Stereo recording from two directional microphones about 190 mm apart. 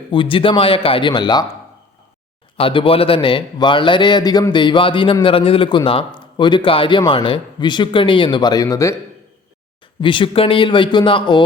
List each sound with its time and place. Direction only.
0.1 s a man's voice: 25° left (ahead or behind)
2.6 s a man's voice: 30° left (ahead or behind)
10.0 s a man's voice: 25° left (ahead or behind)